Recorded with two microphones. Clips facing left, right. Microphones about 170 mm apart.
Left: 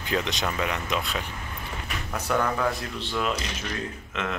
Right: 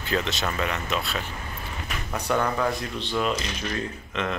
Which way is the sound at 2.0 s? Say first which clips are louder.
Right 1 dB; centre (ahead or behind).